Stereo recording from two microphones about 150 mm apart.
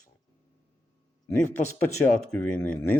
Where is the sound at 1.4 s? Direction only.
55° left (ahead or behind).